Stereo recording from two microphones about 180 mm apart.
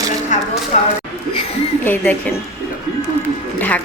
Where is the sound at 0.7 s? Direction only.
40° left (ahead or behind).